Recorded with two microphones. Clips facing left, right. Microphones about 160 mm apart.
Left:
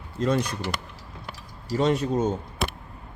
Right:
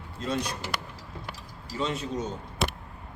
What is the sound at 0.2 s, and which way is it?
Speech, 50° left (ahead or behind).